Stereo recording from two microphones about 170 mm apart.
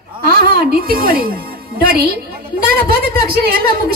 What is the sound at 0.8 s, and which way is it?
Speech, 55° right (ahead or behind).